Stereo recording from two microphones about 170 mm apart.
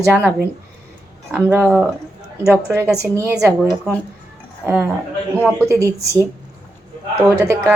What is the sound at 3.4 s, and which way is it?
A woman's voice, 5° right (ahead or behind).